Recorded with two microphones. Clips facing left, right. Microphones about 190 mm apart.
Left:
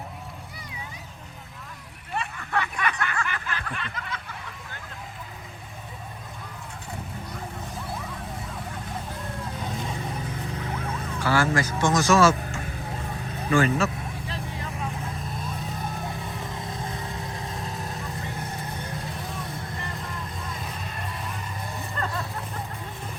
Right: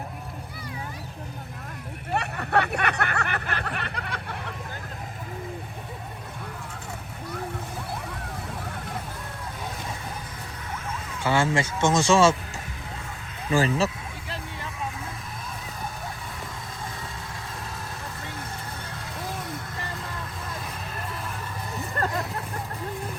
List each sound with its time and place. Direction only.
2.1 s a sound: 65° right (ahead or behind)
11.2 s speech: 25° right (ahead or behind)
13.5 s speech: 35° right (ahead or behind)